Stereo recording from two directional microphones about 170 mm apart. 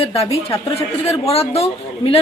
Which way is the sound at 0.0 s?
35° left (ahead or behind).